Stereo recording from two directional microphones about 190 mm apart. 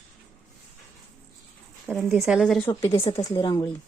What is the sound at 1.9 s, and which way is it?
Speech, centre (ahead or behind).